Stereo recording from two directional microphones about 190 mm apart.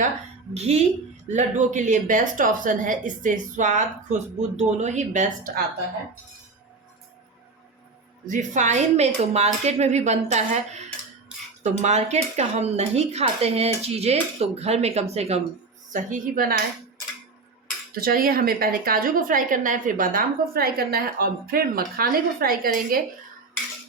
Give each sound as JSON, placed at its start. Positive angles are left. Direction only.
{"t": 0.5, "sound": "speech", "side_deg": -35}
{"t": 8.3, "sound": "a woman's voice", "side_deg": -40}
{"t": 17.9, "sound": "a woman's voice", "side_deg": -50}